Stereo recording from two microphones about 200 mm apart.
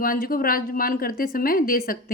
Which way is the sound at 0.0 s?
45° left (ahead or behind).